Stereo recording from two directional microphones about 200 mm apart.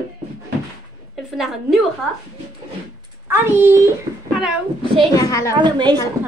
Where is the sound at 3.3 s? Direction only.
10° right (ahead or behind).